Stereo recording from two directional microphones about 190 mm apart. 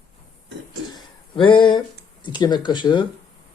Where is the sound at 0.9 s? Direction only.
25° left (ahead or behind).